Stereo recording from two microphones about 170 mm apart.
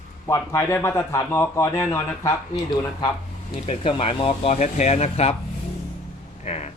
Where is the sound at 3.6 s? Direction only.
35° left (ahead or behind).